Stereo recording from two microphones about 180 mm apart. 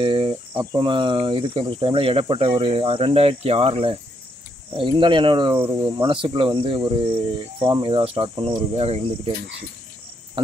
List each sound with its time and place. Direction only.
0.0 s speech: 30° right (ahead or behind)